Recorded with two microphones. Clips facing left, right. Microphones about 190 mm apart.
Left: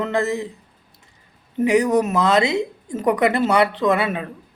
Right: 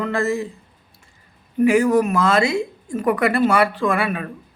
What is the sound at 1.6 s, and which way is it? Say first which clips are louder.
Speech: right 1 dB; 20° left (ahead or behind).